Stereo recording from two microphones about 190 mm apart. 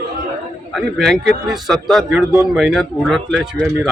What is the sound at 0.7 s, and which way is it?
A man's voice, centre (ahead or behind).